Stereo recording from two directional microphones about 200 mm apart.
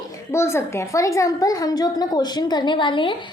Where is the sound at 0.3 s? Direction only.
15° left (ahead or behind).